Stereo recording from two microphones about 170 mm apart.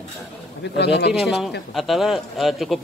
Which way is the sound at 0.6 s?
85° left.